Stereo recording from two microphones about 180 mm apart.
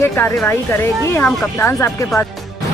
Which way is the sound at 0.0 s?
15° left (ahead or behind).